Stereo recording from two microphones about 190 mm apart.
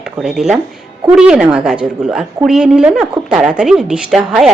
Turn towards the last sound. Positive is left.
turn(degrees=-5)  # may be behind; listen again after turning